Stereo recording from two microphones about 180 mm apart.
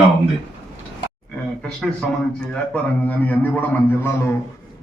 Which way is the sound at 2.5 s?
5° left (ahead or behind).